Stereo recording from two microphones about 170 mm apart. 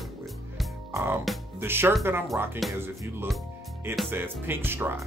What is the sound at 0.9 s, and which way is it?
Music, 10° right (ahead or behind).